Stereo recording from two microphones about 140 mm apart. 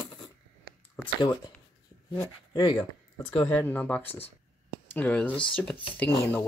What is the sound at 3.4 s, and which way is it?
Speech, 10° left (ahead or behind).